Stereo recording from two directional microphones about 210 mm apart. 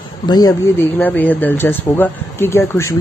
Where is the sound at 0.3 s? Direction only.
20° left (ahead or behind).